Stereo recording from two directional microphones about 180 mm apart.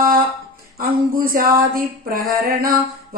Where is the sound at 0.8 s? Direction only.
50° right (ahead or behind).